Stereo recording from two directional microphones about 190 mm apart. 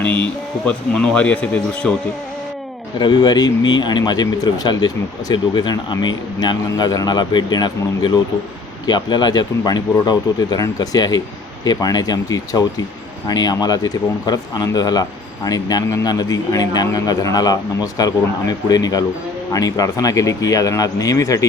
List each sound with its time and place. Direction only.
0.9 s speech: 5° left (ahead or behind)
3.0 s a man's voice: 25° left (ahead or behind)